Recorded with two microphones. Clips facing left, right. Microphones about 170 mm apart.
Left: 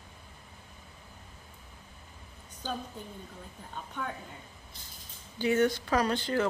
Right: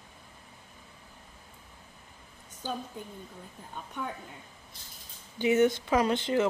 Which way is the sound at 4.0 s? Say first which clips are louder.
Right 1 dB; 10° right (ahead or behind).